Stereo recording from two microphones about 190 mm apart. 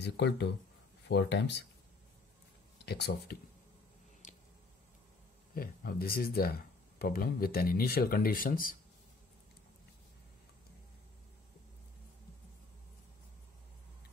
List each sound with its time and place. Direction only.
0.0 s speech: 65° left (ahead or behind)
2.8 s speech: 60° left (ahead or behind)
4.2 s a sound: 40° left (ahead or behind)
5.5 s speech: 50° left (ahead or behind)